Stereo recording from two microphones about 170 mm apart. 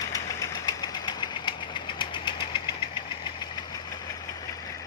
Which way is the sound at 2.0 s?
30° left (ahead or behind).